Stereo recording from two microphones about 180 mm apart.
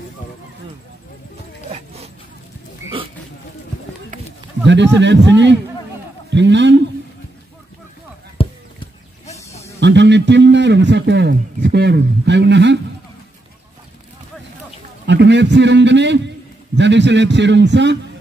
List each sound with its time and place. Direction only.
4.6 s a man's voice: 80° right
8.4 s a sound: 35° left (ahead or behind)
9.8 s a man's voice: 75° right (ahead or behind)
15.0 s a man's voice: 75° right (ahead or behind)